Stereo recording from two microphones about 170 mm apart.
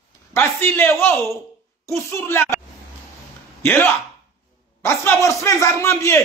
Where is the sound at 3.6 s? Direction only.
10° left (ahead or behind).